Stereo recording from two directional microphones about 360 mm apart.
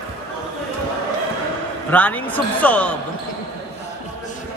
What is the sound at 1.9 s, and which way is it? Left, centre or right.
A man's voice, centre.